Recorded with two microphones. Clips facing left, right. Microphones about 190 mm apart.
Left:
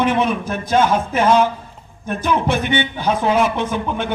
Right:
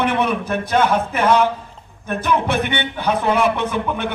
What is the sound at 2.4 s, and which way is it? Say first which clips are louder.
A man's voice: left 2 dB; 60° right (ahead or behind).